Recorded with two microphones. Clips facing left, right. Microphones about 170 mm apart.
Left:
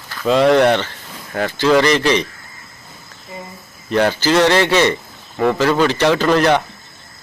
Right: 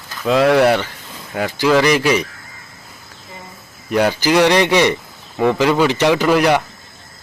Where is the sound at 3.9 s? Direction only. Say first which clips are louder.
Even; 10° right (ahead or behind).